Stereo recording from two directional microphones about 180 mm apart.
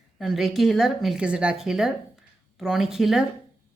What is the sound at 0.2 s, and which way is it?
A woman's voice, centre (ahead or behind).